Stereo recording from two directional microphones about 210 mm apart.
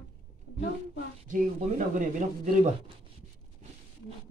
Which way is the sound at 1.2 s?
40° right (ahead or behind).